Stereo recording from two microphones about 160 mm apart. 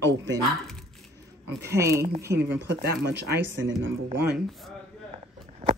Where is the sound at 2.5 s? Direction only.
90° right.